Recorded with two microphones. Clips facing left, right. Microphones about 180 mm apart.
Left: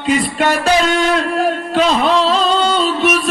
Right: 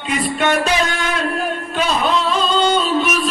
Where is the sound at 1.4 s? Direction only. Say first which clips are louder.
Left 6 dB; 80° left.